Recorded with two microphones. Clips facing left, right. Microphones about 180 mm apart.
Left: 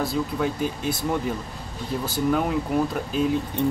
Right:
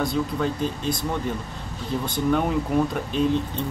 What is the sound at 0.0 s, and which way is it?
Speech, 5° left (ahead or behind).